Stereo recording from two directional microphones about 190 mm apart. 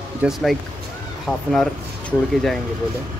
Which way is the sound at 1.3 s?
10° left (ahead or behind).